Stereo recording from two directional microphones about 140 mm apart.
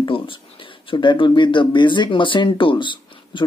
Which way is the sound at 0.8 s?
35° left (ahead or behind).